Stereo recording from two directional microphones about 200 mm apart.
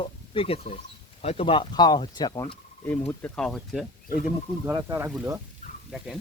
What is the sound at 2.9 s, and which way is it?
Speech, 10° left (ahead or behind).